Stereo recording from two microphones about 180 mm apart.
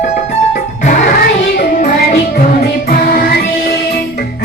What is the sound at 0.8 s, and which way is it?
Music, 55° left (ahead or behind).